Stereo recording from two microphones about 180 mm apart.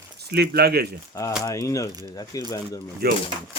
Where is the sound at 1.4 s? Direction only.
20° left (ahead or behind).